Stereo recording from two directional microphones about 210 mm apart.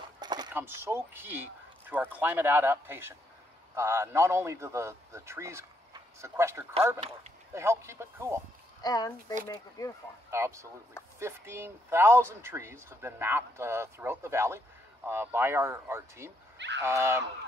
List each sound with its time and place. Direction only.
0.2 s mechanisms: 20° right (ahead or behind)
0.5 s a man's voice: 10° right (ahead or behind)
8.8 s speech: 20° left (ahead or behind)
10.3 s a man's voice: 15° right (ahead or behind)
16.5 s speech: 55° right (ahead or behind)
16.8 s a man's voice: 10° right (ahead or behind)